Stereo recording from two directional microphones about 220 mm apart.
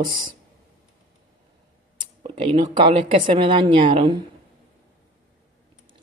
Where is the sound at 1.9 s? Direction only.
25° right (ahead or behind).